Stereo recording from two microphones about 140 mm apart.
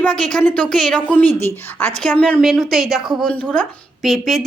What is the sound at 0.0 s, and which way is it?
A woman's voice, 5° left (ahead or behind).